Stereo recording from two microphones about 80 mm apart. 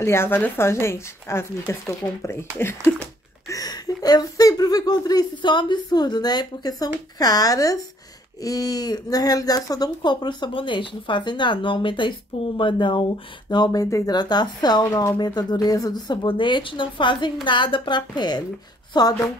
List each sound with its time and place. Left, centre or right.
0.0 s a woman's voice: left
3.4 s speech: left
10.0 s speech: left
13.5 s speech: left
14.1 s speech: left